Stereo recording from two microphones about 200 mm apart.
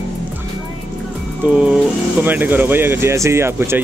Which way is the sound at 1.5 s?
5° right (ahead or behind).